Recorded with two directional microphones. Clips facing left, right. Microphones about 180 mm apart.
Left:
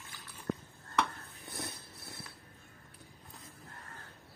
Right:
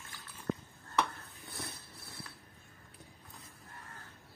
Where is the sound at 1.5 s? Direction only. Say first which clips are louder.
Left 3 dB; 20° left (ahead or behind).